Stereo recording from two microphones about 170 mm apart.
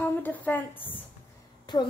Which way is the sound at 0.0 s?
10° left (ahead or behind).